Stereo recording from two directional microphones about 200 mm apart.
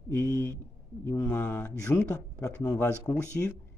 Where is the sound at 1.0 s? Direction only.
15° left (ahead or behind).